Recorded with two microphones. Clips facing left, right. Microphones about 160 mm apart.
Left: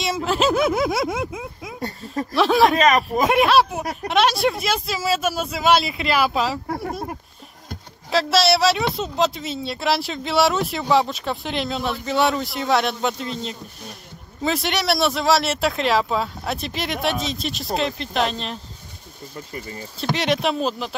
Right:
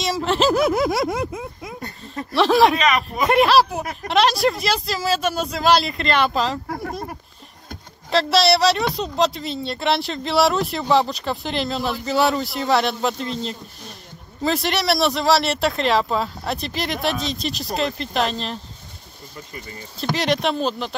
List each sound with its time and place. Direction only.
0.0 s speech: centre (ahead or behind)
2.8 s speech: 45° left (ahead or behind)
3.3 s speech: centre (ahead or behind)
8.1 s speech: centre (ahead or behind)
20.0 s speech: centre (ahead or behind)